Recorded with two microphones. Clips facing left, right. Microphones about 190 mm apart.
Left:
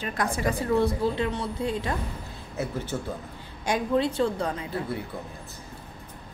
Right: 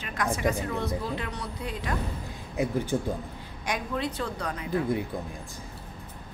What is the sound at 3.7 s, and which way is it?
Speech, 30° left (ahead or behind).